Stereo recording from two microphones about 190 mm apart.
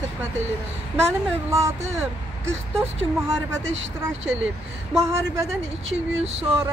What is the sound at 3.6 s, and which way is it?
Speech, 80° right.